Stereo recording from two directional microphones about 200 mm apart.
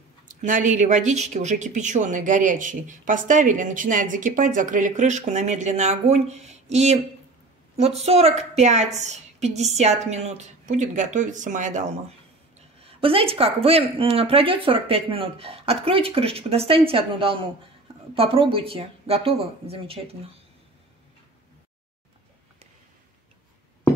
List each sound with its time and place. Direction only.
0.3 s speech: 40° right (ahead or behind)